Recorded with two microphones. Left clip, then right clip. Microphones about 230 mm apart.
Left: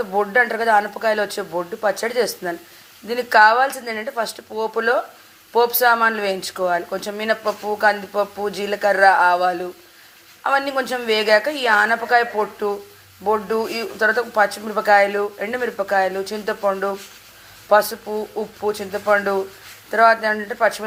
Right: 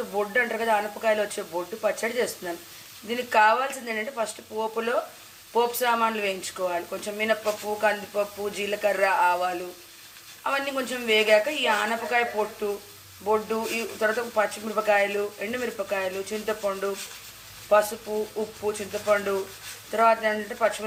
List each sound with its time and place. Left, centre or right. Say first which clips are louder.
0.2 s speech: left 7 dB; left